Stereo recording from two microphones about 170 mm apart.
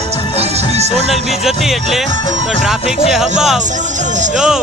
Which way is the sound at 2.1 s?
25° left (ahead or behind).